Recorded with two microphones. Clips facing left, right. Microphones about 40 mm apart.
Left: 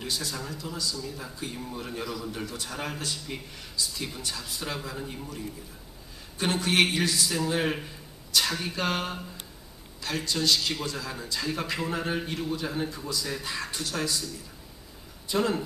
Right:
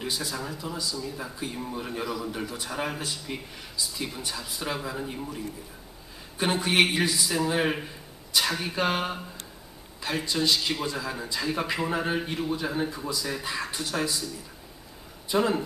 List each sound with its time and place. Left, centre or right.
0.0 s a man's voice: centre